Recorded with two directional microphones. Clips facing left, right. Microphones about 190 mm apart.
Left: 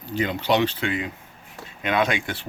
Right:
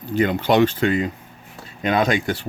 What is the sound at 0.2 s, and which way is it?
Speech, 50° right (ahead or behind).